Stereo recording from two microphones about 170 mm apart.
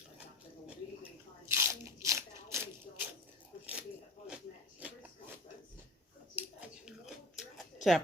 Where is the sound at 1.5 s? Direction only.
15° right (ahead or behind).